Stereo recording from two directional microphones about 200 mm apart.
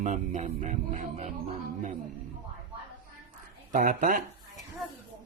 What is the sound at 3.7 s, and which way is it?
Speech, 45° right (ahead or behind).